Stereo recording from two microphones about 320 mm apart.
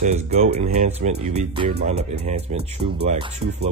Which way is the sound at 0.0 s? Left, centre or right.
Centre.